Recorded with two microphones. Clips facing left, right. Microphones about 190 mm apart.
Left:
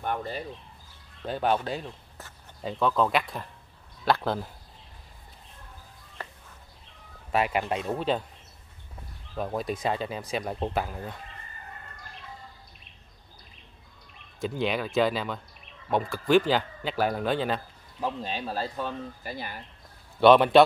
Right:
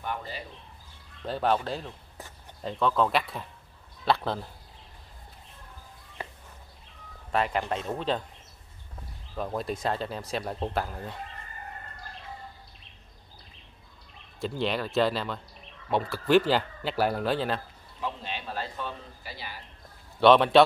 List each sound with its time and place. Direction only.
0.0 s a sound: 50° left (ahead or behind)
1.2 s speech: 5° left (ahead or behind)
7.3 s speech: 10° left (ahead or behind)
9.4 s speech: 5° left (ahead or behind)
14.4 s speech: centre (ahead or behind)
18.0 s a man's voice: 40° left (ahead or behind)
20.2 s speech: centre (ahead or behind)